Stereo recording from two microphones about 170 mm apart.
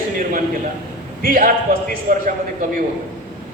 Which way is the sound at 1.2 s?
55° right (ahead or behind).